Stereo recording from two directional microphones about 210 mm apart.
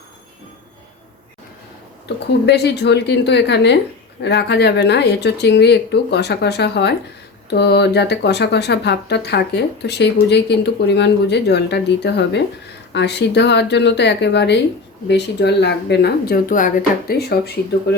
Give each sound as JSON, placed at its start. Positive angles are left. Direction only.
{"t": 2.5, "sound": "speech", "side_deg": 55}